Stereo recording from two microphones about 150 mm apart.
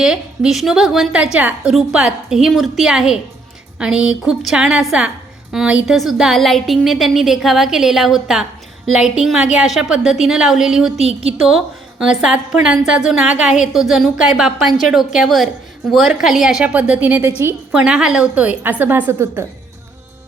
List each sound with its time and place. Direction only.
0.0 s a woman's voice: 5° right (ahead or behind)
11.0 s a woman's voice: 40° right (ahead or behind)
11.4 s a woman's voice: 5° right (ahead or behind)